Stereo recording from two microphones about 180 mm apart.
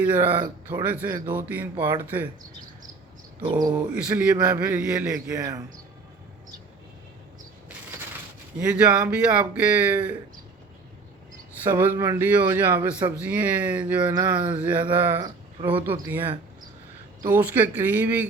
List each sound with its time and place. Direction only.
0.0 s speech: 10° right (ahead or behind)
3.8 s speech: 5° right (ahead or behind)
5.4 s speech: 20° right (ahead or behind)
8.5 s speech: 5° right (ahead or behind)
11.6 s speech: 10° right (ahead or behind)